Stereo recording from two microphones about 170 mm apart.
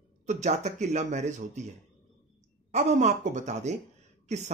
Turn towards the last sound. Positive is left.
turn(degrees=-45)  # may be behind; listen again after turning